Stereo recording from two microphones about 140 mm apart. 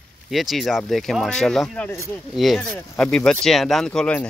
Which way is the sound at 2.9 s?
5° left (ahead or behind).